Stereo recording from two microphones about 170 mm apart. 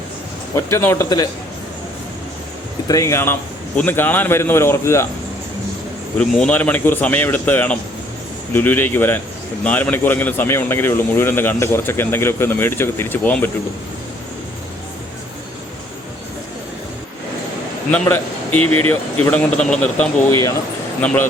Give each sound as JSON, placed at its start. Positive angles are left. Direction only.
{"t": 0.5, "sound": "a man's voice", "side_deg": 15}
{"t": 2.8, "sound": "a man's voice", "side_deg": 20}
{"t": 6.1, "sound": "a man's voice", "side_deg": 5}
{"t": 17.9, "sound": "a man's voice", "side_deg": 10}